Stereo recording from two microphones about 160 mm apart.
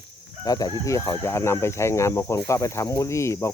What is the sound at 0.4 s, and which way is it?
Speech, 25° left (ahead or behind).